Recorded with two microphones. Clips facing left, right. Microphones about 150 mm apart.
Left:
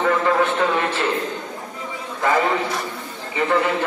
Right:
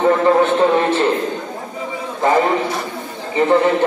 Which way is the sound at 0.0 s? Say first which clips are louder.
Right 5 dB; 30° right (ahead or behind).